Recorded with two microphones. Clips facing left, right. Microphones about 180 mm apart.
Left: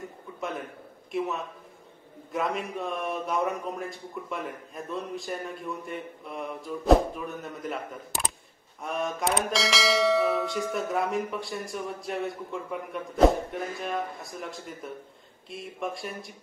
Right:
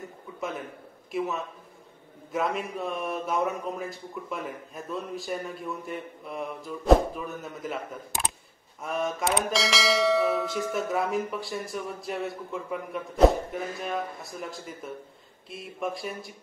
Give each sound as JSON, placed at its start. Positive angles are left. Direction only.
{"t": 1.1, "sound": "bell", "side_deg": 0}